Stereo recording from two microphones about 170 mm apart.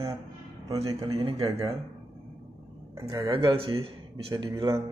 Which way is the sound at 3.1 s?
25° right (ahead or behind).